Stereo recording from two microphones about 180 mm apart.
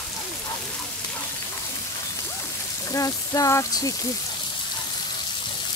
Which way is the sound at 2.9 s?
20° left (ahead or behind).